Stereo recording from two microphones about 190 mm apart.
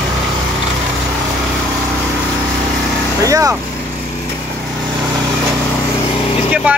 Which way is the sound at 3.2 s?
15° right (ahead or behind).